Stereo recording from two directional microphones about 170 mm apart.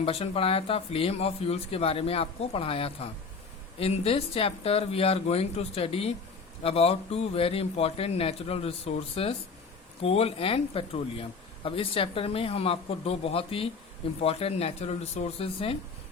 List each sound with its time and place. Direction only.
0.0 s speech: 35° left (ahead or behind)